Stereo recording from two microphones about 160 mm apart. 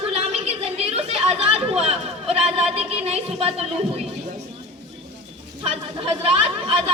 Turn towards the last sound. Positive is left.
turn(degrees=-40)  # may be behind; listen again after turning